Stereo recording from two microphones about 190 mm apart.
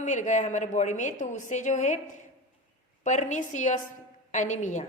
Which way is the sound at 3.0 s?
40° left (ahead or behind).